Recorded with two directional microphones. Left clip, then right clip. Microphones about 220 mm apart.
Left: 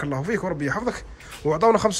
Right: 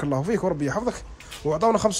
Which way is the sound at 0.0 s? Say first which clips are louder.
Right 2 dB; 20° right (ahead or behind).